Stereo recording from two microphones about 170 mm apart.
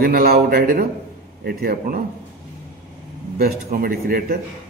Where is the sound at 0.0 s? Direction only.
60° right (ahead or behind).